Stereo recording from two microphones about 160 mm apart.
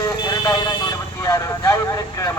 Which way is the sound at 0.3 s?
25° left (ahead or behind).